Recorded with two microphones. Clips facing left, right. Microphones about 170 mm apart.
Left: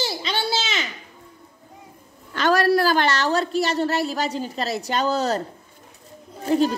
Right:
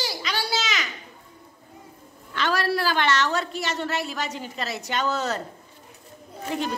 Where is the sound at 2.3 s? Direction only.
45° left (ahead or behind).